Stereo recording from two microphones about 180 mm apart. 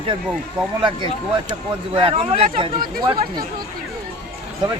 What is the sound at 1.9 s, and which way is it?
Speech, 30° right (ahead or behind).